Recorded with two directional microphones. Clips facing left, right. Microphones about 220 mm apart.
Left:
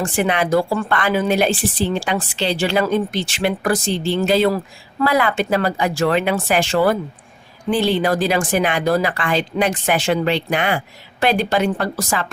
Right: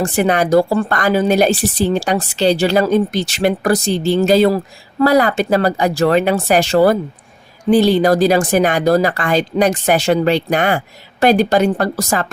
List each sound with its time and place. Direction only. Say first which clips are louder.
0.0 s a woman's voice: right 4 dB; 40° right (ahead or behind)